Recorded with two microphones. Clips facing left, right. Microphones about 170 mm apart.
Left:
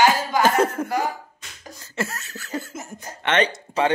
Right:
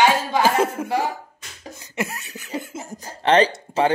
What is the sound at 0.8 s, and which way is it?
Speech, 25° right (ahead or behind).